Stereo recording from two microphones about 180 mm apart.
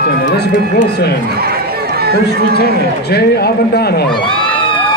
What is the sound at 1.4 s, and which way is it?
Chatter, 60° right (ahead or behind).